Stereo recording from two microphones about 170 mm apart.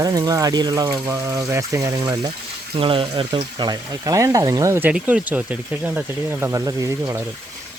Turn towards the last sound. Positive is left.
turn(degrees=-20)  # may be behind; listen again after turning